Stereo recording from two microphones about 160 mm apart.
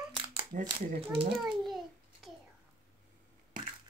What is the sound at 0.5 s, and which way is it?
Speech, 55° right (ahead or behind).